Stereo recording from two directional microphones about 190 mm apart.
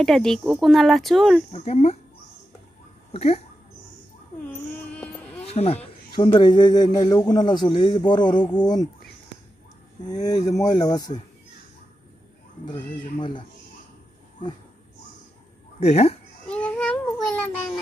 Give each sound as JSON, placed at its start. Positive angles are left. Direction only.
{"t": 0.0, "sound": "speech", "side_deg": 0}
{"t": 1.5, "sound": "speech", "side_deg": 35}
{"t": 3.1, "sound": "speech", "side_deg": 35}
{"t": 4.9, "sound": "music", "side_deg": 5}
{"t": 5.4, "sound": "music", "side_deg": 35}
{"t": 6.1, "sound": "speech", "side_deg": 25}
{"t": 10.0, "sound": "speech", "side_deg": 20}
{"t": 13.2, "sound": "speech", "side_deg": 25}
{"t": 15.8, "sound": "speech", "side_deg": 30}
{"t": 16.4, "sound": "babbling", "side_deg": 5}